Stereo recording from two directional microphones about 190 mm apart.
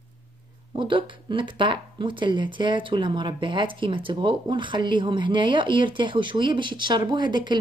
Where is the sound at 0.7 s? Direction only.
25° right (ahead or behind).